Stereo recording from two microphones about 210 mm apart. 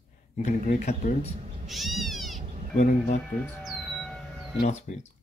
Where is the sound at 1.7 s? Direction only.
Centre (ahead or behind).